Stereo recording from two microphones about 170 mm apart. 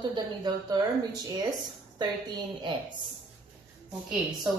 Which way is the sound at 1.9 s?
25° right (ahead or behind).